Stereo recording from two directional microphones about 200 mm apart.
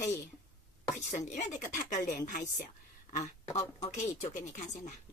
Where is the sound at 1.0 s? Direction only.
35° left (ahead or behind).